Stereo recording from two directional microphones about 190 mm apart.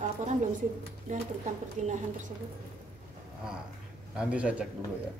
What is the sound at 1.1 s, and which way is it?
Speech, 40° right (ahead or behind).